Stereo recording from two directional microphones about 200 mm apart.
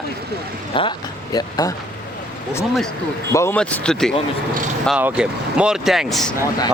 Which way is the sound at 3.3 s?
10° left (ahead or behind).